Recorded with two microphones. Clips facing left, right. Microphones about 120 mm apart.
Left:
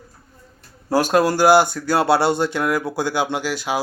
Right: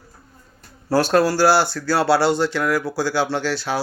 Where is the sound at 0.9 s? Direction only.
15° left (ahead or behind).